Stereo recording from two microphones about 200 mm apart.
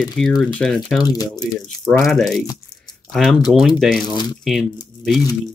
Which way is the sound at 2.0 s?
Centre (ahead or behind).